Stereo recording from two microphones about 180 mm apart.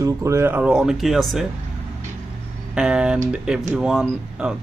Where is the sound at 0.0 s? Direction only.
15° right (ahead or behind); by 1.5 s centre (ahead or behind).